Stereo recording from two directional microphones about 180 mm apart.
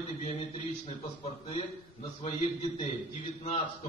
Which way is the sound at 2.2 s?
35° left (ahead or behind).